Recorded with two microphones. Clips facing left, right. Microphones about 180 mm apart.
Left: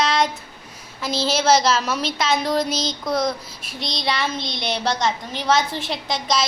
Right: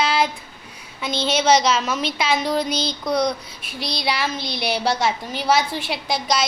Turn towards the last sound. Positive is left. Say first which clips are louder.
# right 1 dB
turn(degrees=-5)  # may be behind; listen again after turning